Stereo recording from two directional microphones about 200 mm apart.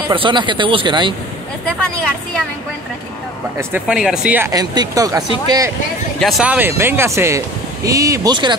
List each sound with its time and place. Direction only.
0.1 s speech: 25° right (ahead or behind)
1.7 s speech: 5° left (ahead or behind)
3.5 s speech: 5° right (ahead or behind)
6.1 s speech: centre (ahead or behind); by 8.5 s 20° right (ahead or behind)